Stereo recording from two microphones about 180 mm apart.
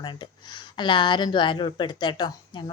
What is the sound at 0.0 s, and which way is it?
Speech, 25° left (ahead or behind).